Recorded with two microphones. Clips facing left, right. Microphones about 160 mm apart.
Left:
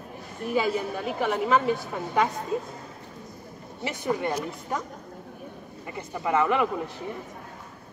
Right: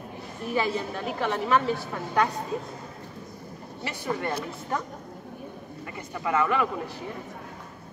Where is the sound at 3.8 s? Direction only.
15° left (ahead or behind).